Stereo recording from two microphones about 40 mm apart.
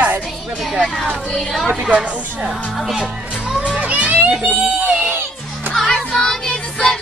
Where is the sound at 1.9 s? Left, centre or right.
Right.